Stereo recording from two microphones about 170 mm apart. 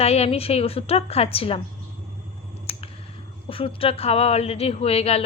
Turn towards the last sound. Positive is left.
turn(degrees=35)  # may be behind; listen again after turning